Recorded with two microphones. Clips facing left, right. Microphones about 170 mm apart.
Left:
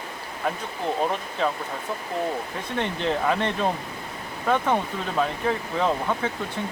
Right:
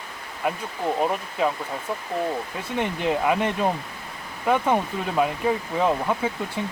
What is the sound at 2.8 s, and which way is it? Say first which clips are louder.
Speech: right 2 dB; 10° right (ahead or behind).